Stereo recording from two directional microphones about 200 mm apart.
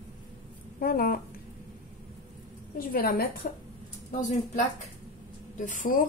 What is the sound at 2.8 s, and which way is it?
Speech, 45° left (ahead or behind).